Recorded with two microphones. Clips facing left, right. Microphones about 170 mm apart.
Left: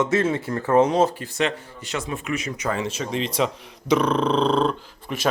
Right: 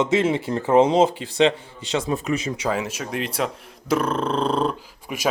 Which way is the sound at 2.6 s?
10° right (ahead or behind).